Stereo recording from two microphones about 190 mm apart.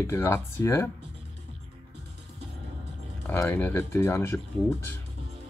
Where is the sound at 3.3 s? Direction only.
10° left (ahead or behind).